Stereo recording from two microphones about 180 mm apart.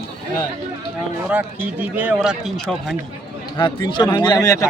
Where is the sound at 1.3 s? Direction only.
10° right (ahead or behind).